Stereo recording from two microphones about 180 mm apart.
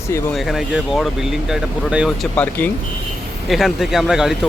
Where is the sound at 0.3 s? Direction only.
Centre (ahead or behind).